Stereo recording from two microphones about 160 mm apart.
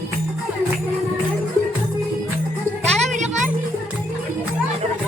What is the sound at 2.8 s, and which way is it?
Music, 45° right (ahead or behind).